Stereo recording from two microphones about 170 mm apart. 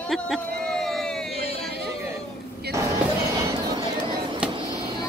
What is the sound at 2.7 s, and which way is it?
Speech, 70° right (ahead or behind).